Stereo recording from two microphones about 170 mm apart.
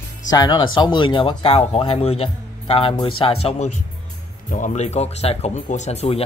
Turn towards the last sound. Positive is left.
turn(degrees=40)  # may be behind; listen again after turning